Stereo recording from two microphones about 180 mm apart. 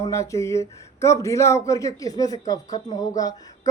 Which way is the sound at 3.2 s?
20° left (ahead or behind).